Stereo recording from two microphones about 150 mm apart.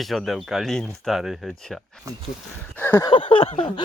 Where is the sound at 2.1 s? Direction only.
25° right (ahead or behind).